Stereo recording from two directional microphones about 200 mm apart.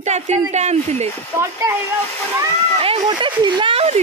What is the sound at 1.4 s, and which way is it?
Speech, 15° right (ahead or behind).